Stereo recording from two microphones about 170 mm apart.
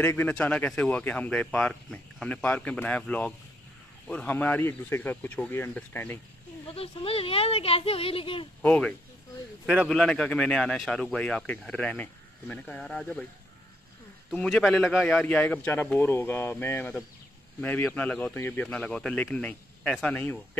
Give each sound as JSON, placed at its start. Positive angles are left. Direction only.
{"t": 0.0, "sound": "speech", "side_deg": 10}
{"t": 6.7, "sound": "speech", "side_deg": 35}
{"t": 8.6, "sound": "speech", "side_deg": 5}
{"t": 14.3, "sound": "speech", "side_deg": 5}